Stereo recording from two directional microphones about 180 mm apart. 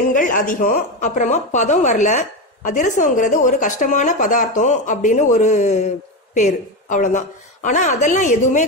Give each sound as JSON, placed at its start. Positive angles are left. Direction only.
{"t": 0.1, "sound": "a woman's voice", "side_deg": 45}